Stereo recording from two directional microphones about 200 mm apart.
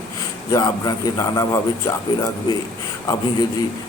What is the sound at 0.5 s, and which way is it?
A man's voice, 20° left (ahead or behind).